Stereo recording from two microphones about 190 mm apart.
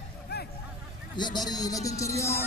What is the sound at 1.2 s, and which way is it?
A man's voice, 20° left (ahead or behind).